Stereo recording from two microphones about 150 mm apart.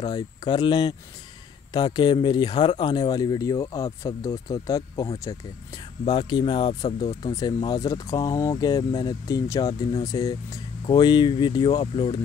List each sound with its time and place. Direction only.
0.0 s speech: 30° left (ahead or behind)